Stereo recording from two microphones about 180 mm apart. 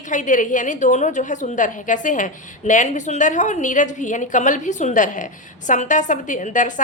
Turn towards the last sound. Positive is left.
turn(degrees=45)  # may be behind; listen again after turning